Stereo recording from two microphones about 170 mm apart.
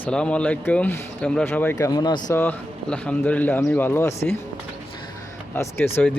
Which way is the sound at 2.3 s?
10° left (ahead or behind).